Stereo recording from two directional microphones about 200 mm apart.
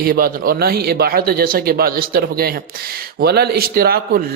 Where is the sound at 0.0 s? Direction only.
45° right (ahead or behind).